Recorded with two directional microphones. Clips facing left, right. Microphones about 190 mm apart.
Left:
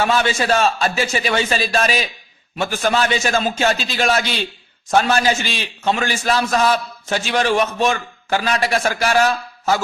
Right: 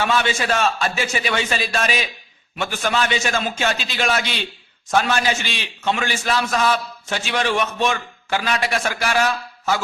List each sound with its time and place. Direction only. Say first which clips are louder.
0.0 s a man's voice: left 3 dB; 40° left (ahead or behind)